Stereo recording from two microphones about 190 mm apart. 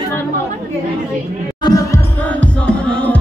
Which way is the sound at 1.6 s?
15° left (ahead or behind).